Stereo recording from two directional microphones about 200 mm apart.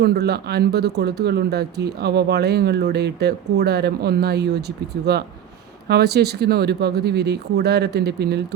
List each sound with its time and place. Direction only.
0.0 s speech: 55° right (ahead or behind)